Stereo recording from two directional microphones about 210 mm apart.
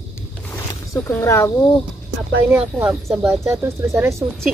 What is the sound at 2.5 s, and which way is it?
Speech, 5° right (ahead or behind).